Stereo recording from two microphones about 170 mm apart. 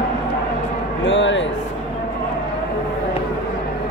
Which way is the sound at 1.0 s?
90° left.